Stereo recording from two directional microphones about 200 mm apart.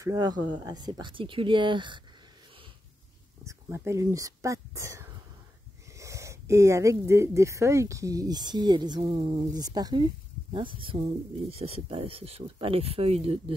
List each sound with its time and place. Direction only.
0.0 s speech: 20° right (ahead or behind)
3.4 s speech: 15° right (ahead or behind)